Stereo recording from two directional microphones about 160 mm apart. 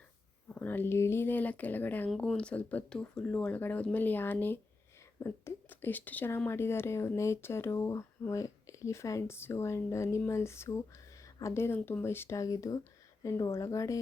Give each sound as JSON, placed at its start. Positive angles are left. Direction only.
{"t": 0.4, "sound": "speech", "side_deg": 10}